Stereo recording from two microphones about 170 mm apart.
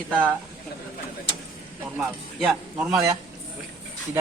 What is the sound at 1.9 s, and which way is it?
Speech, 5° right (ahead or behind).